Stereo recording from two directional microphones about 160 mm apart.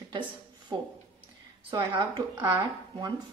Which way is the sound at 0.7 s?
25° right (ahead or behind).